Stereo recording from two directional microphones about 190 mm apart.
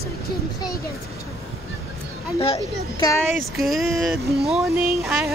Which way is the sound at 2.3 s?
30° left (ahead or behind).